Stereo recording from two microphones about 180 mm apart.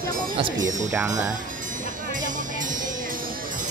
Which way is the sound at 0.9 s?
20° right (ahead or behind).